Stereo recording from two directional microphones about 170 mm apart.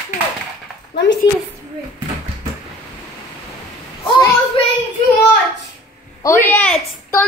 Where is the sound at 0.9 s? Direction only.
90° left.